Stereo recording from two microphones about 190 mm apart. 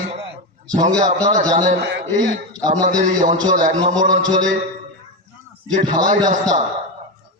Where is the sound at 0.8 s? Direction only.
20° right (ahead or behind).